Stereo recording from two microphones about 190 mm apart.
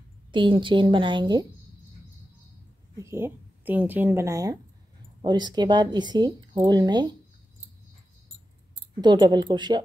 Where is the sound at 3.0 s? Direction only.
15° right (ahead or behind).